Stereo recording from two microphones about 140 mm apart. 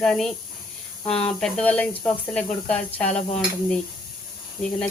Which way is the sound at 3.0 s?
55° left (ahead or behind).